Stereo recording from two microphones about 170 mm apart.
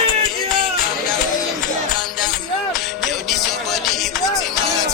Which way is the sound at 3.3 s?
Centre (ahead or behind).